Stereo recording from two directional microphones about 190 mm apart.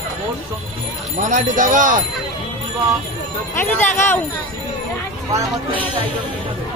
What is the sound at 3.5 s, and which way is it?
Speech, 10° left (ahead or behind).